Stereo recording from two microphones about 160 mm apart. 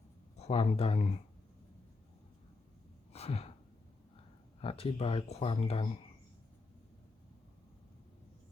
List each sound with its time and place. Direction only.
0.3 s speech: 40° left (ahead or behind)
3.1 s a sound: 40° left (ahead or behind)
4.6 s speech: 40° left (ahead or behind)